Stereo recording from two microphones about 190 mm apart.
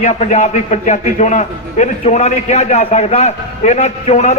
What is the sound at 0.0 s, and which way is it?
A man's voice, 40° left (ahead or behind).